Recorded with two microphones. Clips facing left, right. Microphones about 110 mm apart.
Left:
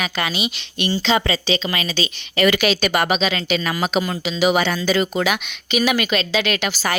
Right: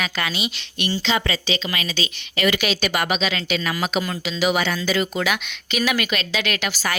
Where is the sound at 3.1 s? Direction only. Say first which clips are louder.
Left 3 dB; 30° left (ahead or behind).